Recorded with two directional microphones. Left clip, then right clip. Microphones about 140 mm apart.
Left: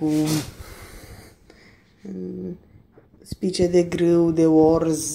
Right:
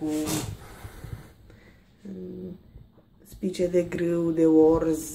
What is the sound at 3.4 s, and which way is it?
Speech, 30° left (ahead or behind).